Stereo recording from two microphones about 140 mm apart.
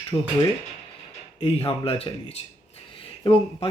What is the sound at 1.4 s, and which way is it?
Speech, 45° left (ahead or behind).